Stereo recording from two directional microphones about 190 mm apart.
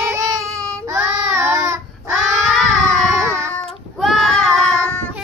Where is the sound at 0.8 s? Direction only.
15° right (ahead or behind).